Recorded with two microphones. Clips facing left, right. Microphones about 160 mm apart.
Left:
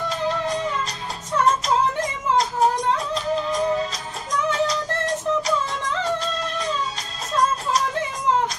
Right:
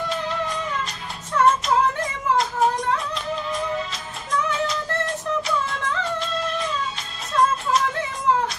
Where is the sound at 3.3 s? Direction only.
40° left (ahead or behind).